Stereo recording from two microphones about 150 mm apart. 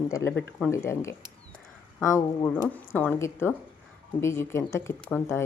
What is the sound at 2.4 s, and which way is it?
Speech, 15° left (ahead or behind).